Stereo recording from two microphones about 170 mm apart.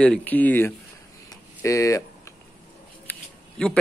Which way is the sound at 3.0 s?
5° left (ahead or behind).